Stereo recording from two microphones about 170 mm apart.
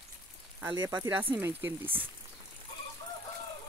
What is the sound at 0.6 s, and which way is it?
Speech, 15° right (ahead or behind).